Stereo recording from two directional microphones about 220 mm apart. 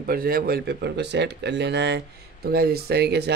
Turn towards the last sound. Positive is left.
turn(degrees=-50)  # may be behind; listen again after turning